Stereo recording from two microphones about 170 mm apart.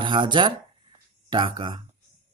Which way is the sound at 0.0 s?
30° right (ahead or behind).